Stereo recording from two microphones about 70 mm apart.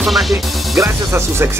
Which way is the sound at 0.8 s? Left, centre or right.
Right.